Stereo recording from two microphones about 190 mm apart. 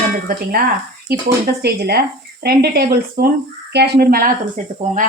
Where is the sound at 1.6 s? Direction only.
55° right (ahead or behind).